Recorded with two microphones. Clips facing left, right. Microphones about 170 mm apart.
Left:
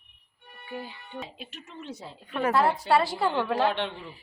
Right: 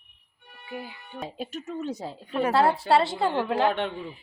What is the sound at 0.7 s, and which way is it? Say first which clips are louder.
Speech: even; 10° right (ahead or behind).